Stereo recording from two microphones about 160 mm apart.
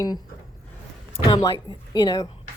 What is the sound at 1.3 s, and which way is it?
Speech, 25° left (ahead or behind).